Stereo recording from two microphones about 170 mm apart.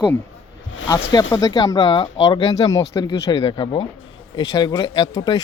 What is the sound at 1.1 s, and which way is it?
A man's voice, 20° left (ahead or behind).